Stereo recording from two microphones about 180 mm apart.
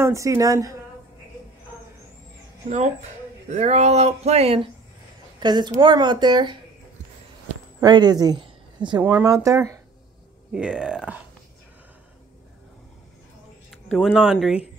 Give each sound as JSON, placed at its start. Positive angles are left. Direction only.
{"t": 0.0, "sound": "speech", "side_deg": -15}
{"t": 2.7, "sound": "speech", "side_deg": -40}
{"t": 5.4, "sound": "a woman's voice", "side_deg": -25}
{"t": 7.8, "sound": "speech", "side_deg": -25}
{"t": 9.0, "sound": "speech", "side_deg": -15}
{"t": 10.5, "sound": "speech", "side_deg": -5}
{"t": 13.7, "sound": "a sound", "side_deg": 0}
{"t": 14.1, "sound": "speech", "side_deg": 0}